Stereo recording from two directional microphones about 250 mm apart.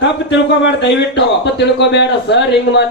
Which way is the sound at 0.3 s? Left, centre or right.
Left.